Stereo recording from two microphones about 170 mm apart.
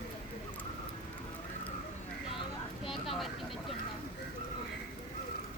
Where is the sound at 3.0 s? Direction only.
Centre (ahead or behind).